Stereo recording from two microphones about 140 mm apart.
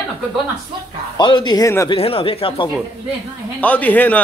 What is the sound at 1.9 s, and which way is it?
Speech, 40° left (ahead or behind).